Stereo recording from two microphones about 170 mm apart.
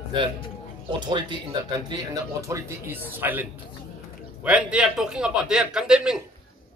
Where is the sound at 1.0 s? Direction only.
25° right (ahead or behind); by 3.4 s 10° right (ahead or behind).